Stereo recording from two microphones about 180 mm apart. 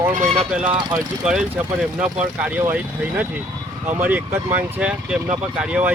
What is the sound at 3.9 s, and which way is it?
Speech, 10° right (ahead or behind).